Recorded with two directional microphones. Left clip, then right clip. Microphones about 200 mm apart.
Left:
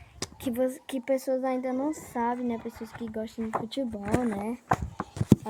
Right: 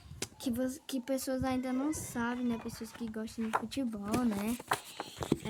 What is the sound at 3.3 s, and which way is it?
Speech, 15° left (ahead or behind).